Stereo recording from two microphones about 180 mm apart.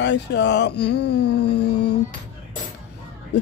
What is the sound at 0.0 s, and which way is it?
Speech, 75° left (ahead or behind).